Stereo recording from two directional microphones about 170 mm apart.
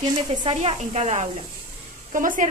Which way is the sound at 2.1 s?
50° right (ahead or behind).